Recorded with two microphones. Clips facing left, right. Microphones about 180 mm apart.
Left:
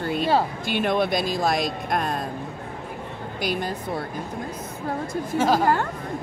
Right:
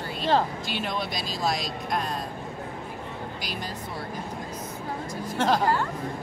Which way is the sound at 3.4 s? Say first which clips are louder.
Left 13 dB; 55° left (ahead or behind).